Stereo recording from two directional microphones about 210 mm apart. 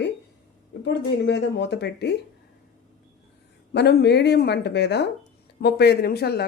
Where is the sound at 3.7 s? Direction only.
50° left (ahead or behind).